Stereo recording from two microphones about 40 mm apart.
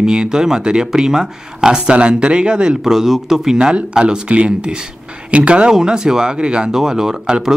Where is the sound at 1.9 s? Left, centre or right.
Right.